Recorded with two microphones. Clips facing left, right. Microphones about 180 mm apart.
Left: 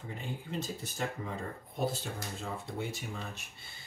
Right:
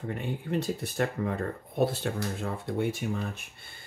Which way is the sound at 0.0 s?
60° right (ahead or behind).